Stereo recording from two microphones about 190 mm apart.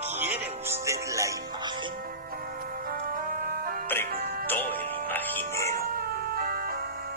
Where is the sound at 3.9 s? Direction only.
10° left (ahead or behind).